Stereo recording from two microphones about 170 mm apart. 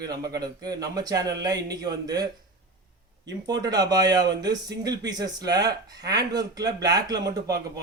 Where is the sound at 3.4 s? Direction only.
25° right (ahead or behind).